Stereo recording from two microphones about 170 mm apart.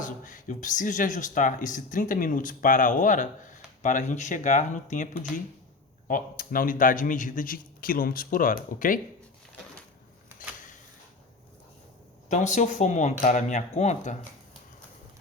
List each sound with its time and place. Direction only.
0.0 s speech: 50° left (ahead or behind)
6.1 s speech: 55° left (ahead or behind)
12.3 s speech: 45° left (ahead or behind)